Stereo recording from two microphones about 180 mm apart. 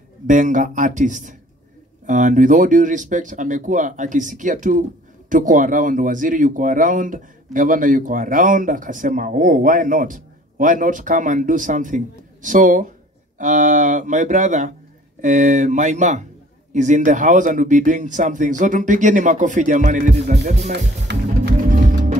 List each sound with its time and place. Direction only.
0.3 s speech: 45° right (ahead or behind)
20.7 s music: 70° right (ahead or behind)
21.6 s music: 45° right (ahead or behind)